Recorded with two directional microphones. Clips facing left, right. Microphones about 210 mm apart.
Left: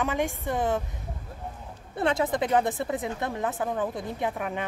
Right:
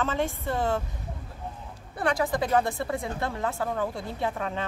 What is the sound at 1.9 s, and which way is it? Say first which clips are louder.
A woman's voice: left 1 dB; 25° left (ahead or behind).